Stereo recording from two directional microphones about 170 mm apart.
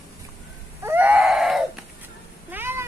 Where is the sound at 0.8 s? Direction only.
10° right (ahead or behind).